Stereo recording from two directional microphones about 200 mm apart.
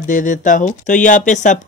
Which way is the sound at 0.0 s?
40° left (ahead or behind).